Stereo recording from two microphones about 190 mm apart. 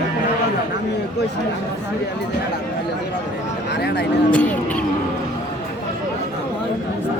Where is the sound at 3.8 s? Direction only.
60° left (ahead or behind).